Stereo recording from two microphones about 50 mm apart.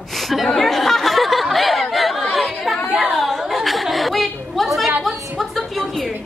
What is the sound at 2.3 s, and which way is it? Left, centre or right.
Chatter, centre.